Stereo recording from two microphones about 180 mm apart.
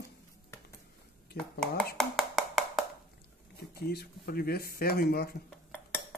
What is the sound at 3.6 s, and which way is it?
Speech, 60° left (ahead or behind).